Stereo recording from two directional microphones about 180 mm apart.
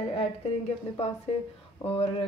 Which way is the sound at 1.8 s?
30° left (ahead or behind).